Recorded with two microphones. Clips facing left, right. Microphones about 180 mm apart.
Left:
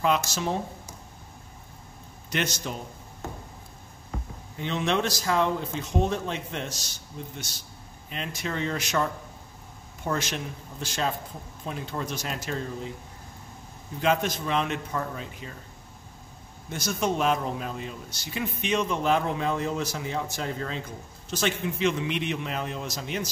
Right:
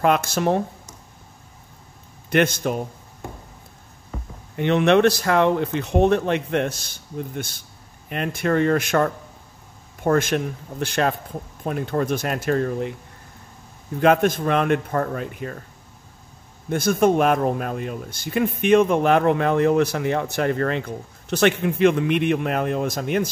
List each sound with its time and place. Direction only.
0.0 s speech: 55° right (ahead or behind)
2.2 s speech: 55° right (ahead or behind)
4.6 s speech: 65° right (ahead or behind)
13.9 s speech: 55° right (ahead or behind)
16.6 s speech: 55° right (ahead or behind)